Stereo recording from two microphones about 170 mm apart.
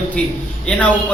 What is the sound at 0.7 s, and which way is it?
Speech, 10° left (ahead or behind).